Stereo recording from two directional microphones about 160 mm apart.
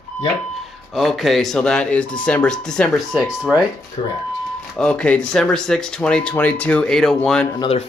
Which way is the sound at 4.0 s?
35° left (ahead or behind).